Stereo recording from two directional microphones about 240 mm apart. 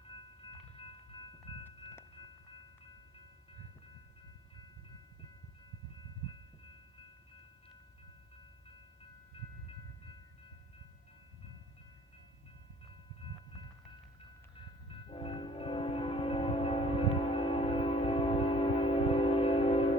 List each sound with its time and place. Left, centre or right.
1.6 s wind chime: centre
15.1 s train: left